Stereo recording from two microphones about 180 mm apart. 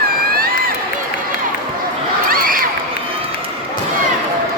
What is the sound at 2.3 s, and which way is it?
Crowd, 50° right (ahead or behind).